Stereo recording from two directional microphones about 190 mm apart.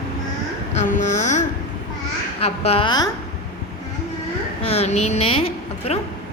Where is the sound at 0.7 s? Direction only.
40° left (ahead or behind).